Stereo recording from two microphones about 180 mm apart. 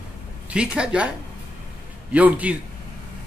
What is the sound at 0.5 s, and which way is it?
Speech, 5° right (ahead or behind).